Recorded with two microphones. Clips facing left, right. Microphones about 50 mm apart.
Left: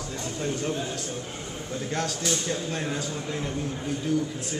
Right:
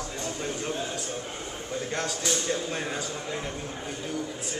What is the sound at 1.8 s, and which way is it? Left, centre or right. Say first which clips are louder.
Speech: left 2 dB; centre.